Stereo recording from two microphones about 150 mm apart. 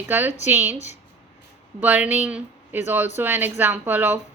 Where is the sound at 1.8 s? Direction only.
10° right (ahead or behind).